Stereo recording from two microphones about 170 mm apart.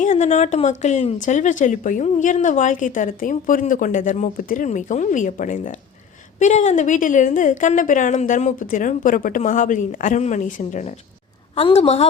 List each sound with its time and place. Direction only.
0.0 s speech: 45° left (ahead or behind)
11.5 s a woman's voice: 35° left (ahead or behind)